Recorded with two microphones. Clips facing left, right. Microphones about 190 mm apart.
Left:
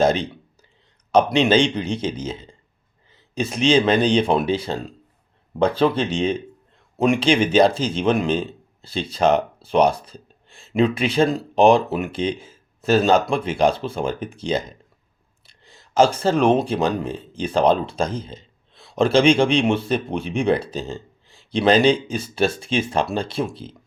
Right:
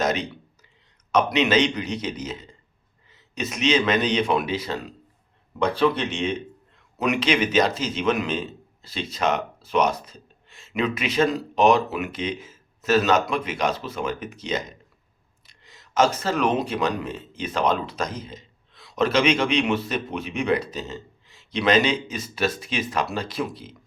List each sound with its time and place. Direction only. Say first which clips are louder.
0.0 s a man's voice: left 6 dB; 30° left (ahead or behind)